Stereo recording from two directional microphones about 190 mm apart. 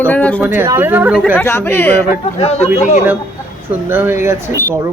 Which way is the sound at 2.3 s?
35° left (ahead or behind).